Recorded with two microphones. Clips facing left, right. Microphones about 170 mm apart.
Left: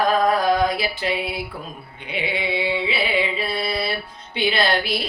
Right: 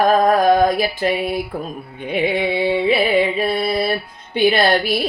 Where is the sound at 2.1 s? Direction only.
50° right (ahead or behind).